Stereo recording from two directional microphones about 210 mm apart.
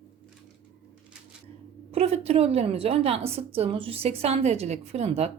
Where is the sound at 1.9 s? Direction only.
30° right (ahead or behind).